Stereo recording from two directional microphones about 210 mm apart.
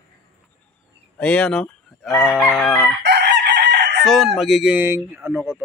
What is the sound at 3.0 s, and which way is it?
Chicken, 55° right (ahead or behind).